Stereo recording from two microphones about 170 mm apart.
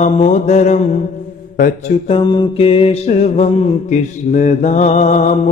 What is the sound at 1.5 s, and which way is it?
Speech, 55° left (ahead or behind).